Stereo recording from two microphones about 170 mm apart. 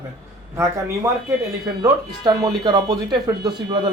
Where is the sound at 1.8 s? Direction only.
25° right (ahead or behind).